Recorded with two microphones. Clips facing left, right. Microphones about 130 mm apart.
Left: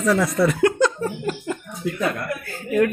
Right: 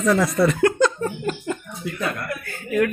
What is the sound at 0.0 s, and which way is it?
Speech, centre (ahead or behind).